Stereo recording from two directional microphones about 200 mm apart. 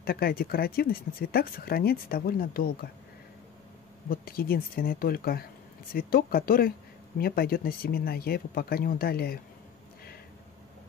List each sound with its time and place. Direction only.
0.0 s speech: 50° left (ahead or behind)
4.1 s speech: 45° left (ahead or behind)